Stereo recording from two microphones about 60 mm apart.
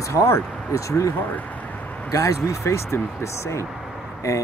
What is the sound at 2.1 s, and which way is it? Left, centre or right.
Speech, left.